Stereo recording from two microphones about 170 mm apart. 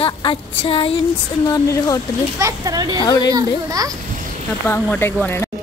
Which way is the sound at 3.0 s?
20° left (ahead or behind).